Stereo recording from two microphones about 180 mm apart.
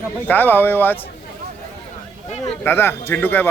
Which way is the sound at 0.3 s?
10° left (ahead or behind).